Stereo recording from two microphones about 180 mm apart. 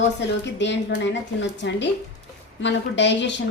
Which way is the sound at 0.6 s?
75° left (ahead or behind).